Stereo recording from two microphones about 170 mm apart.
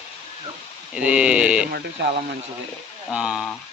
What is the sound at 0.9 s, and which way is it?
Speech, 5° right (ahead or behind).